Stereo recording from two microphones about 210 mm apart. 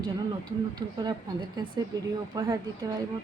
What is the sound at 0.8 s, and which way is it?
Speech, 20° right (ahead or behind).